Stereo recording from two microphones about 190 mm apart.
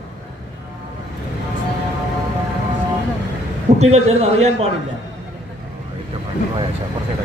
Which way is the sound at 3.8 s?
35° right (ahead or behind).